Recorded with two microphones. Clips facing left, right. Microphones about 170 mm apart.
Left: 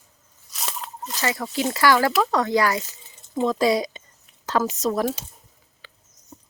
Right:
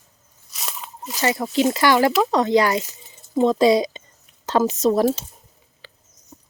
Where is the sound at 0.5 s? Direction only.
Centre (ahead or behind).